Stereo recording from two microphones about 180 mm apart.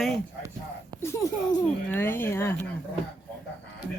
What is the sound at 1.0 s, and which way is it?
A woman's voice, 15° left (ahead or behind).